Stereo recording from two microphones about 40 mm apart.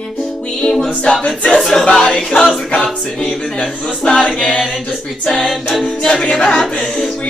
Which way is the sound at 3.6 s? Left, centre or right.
Left.